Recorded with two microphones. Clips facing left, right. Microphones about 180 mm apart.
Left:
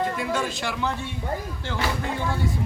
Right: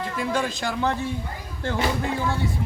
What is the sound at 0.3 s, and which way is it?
Speech, 40° right (ahead or behind).